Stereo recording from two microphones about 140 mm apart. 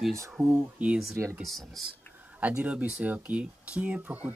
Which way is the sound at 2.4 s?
10° right (ahead or behind).